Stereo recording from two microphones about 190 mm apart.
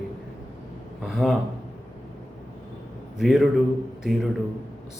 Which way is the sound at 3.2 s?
Centre (ahead or behind).